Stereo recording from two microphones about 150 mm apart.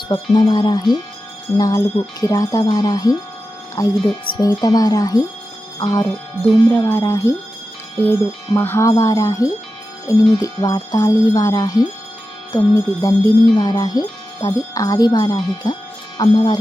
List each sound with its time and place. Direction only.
0.1 s speech: 30° left (ahead or behind)
8.5 s speech: 15° left (ahead or behind)